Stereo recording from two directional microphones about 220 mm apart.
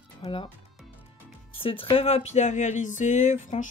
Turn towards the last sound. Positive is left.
turn(degrees=35)  # may be behind; listen again after turning